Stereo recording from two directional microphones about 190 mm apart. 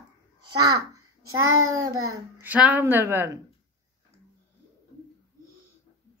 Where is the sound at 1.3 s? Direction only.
90° right.